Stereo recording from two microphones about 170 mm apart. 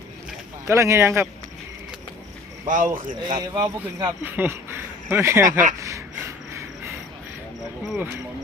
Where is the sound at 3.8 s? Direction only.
15° right (ahead or behind).